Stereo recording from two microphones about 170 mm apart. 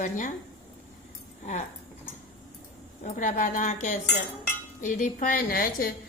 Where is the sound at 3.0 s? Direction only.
50° left (ahead or behind).